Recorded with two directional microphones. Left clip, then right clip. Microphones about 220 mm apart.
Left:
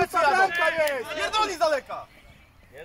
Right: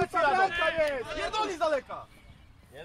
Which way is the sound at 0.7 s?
45° left (ahead or behind).